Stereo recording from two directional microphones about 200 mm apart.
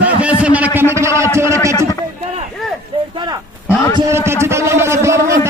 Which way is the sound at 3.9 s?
15° right (ahead or behind).